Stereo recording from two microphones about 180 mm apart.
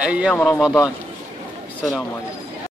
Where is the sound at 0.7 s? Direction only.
20° left (ahead or behind).